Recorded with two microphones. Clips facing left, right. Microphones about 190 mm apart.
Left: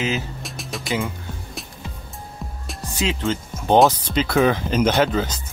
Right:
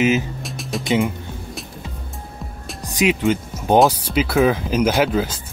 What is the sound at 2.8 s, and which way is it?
Speech, 15° right (ahead or behind).